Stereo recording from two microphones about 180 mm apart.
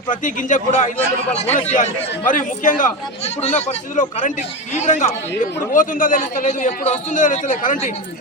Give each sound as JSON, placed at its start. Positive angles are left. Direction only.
{"t": 0.1, "sound": "a man's voice", "side_deg": 45}